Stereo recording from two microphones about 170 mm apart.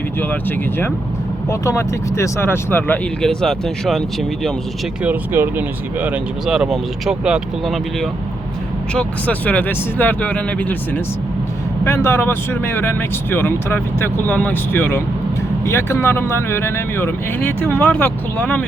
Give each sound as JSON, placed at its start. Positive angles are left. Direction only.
{"t": 0.2, "sound": "speech", "side_deg": 10}
{"t": 5.0, "sound": "speech", "side_deg": -10}
{"t": 8.9, "sound": "speech", "side_deg": 5}